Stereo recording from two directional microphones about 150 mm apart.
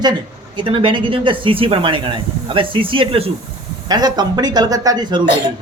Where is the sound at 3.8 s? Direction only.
25° right (ahead or behind).